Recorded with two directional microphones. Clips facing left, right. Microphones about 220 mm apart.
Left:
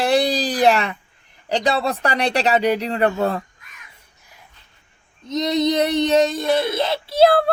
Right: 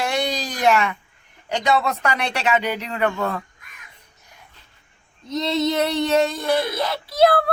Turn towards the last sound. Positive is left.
turn(degrees=25)  # may be behind; listen again after turning